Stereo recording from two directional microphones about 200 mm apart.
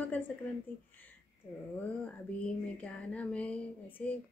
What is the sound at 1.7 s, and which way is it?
Speech, 5° left (ahead or behind).